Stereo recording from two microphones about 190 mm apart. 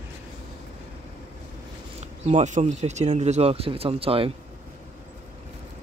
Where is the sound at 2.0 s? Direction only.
40° right (ahead or behind).